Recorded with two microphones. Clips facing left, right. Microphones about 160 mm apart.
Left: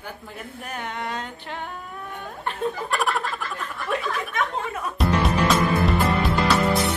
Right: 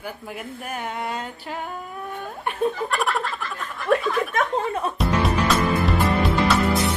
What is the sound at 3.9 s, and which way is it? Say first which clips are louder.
Snicker: right 6 dB; 45° right (ahead or behind).